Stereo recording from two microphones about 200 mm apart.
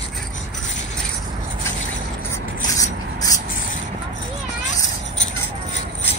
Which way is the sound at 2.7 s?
15° left (ahead or behind).